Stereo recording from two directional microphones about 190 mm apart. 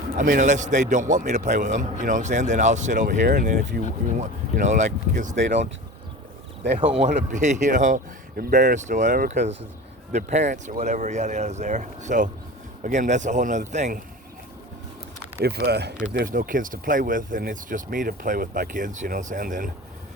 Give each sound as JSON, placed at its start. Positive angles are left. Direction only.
{"t": 0.2, "sound": "a man's voice", "side_deg": -45}
{"t": 6.7, "sound": "speech", "side_deg": -30}
{"t": 7.3, "sound": "a man's voice", "side_deg": -40}
{"t": 15.4, "sound": "speech", "side_deg": -55}
{"t": 16.1, "sound": "speech", "side_deg": -45}